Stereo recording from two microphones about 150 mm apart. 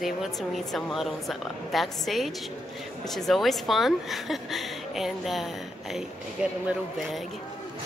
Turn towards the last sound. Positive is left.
turn(degrees=0)  # may be behind; listen again after turning